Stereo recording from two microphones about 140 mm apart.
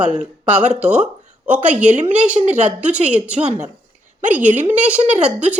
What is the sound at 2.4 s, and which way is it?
Speech, 55° right (ahead or behind).